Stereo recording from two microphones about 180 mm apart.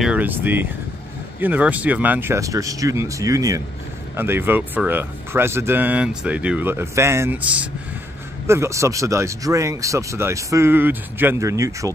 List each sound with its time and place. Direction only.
0.0 s speech: 10° right (ahead or behind)